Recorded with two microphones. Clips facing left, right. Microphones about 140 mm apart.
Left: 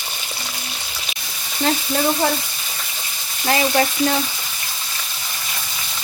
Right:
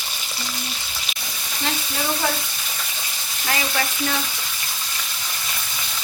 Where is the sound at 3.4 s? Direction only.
35° left (ahead or behind).